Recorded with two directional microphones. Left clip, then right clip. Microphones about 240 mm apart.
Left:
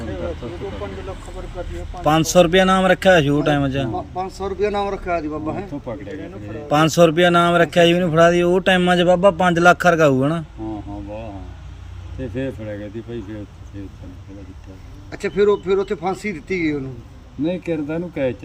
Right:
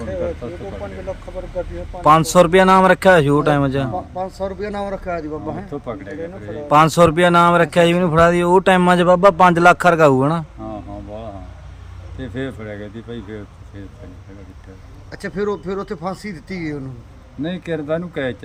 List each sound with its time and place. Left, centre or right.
2.0 s a man's voice: centre
6.7 s a man's voice: centre
12.3 s a man's voice: centre
15.1 s speech: right
17.4 s a man's voice: centre